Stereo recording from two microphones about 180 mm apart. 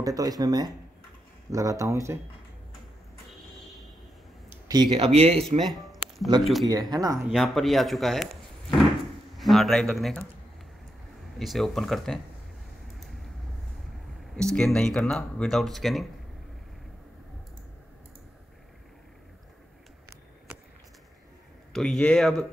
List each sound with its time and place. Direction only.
0.0 s speech: 20° right (ahead or behind)
4.6 s speech: 25° right (ahead or behind)
5.7 s a sound: centre (ahead or behind)
6.4 s speech: centre (ahead or behind)
6.7 s speech: 20° right (ahead or behind)
7.2 s speech: centre (ahead or behind)
11.3 s speech: centre (ahead or behind)
14.3 s speech: 5° left (ahead or behind)
21.7 s speech: 5° left (ahead or behind)